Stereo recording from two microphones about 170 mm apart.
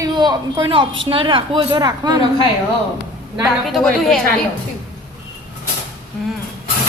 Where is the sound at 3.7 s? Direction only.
Centre (ahead or behind).